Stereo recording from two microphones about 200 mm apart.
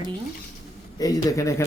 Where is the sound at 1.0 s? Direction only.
20° left (ahead or behind).